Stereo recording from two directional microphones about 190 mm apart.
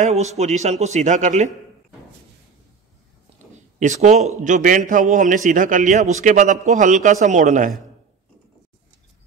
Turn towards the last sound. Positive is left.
turn(degrees=-40)  # may be behind; listen again after turning